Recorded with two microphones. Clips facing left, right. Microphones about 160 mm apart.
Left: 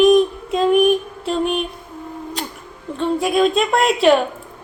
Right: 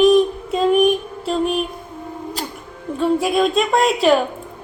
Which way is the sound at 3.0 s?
5° right (ahead or behind).